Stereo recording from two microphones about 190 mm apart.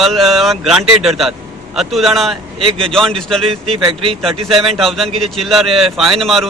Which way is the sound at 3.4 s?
30° right (ahead or behind).